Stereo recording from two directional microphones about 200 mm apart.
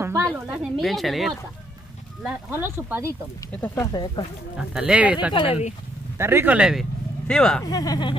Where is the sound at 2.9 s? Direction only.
15° right (ahead or behind).